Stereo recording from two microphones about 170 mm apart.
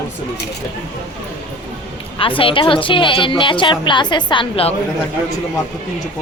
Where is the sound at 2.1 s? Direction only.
30° left (ahead or behind).